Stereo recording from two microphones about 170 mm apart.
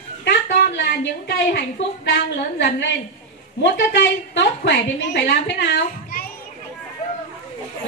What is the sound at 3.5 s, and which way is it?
A woman's voice, 90° left.